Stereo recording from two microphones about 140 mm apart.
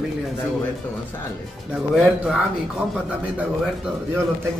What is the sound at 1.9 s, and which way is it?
Speech, 5° right (ahead or behind).